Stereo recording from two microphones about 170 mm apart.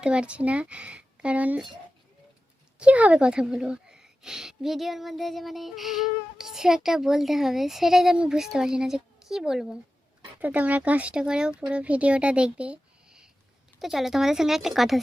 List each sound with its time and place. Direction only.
0.0 s speech: 5° right (ahead or behind)
2.7 s speech: 5° right (ahead or behind)